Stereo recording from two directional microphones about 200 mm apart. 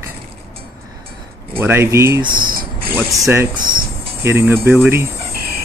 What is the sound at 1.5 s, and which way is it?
Speech, 10° right (ahead or behind).